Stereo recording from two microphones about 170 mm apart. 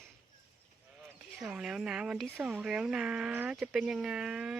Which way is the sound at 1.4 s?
5° right (ahead or behind).